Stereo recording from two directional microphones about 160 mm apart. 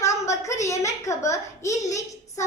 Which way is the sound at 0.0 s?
20° left (ahead or behind).